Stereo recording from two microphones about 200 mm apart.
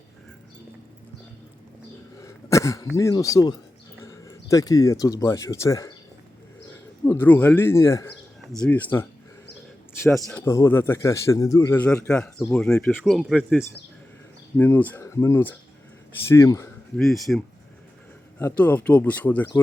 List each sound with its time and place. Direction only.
2.2 s a sound: 15° left (ahead or behind)
2.9 s a man's voice: 15° left (ahead or behind)
7.0 s a man's voice: 10° left (ahead or behind)
10.2 s a man's voice: 10° left (ahead or behind)
17.0 s a man's voice: centre (ahead or behind)